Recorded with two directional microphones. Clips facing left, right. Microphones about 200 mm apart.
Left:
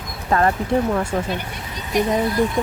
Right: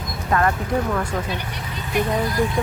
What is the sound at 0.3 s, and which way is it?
Speech, 30° left (ahead or behind).